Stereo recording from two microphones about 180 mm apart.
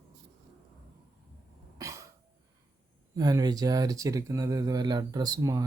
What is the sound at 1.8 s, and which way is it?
Cough, 20° right (ahead or behind).